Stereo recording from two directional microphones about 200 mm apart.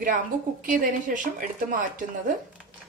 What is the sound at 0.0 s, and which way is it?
A woman's voice, 40° right (ahead or behind).